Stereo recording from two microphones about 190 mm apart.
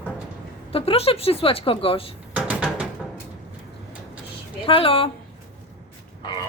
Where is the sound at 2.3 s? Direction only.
5° right (ahead or behind).